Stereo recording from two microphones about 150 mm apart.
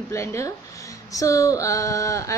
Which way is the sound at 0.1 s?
20° left (ahead or behind).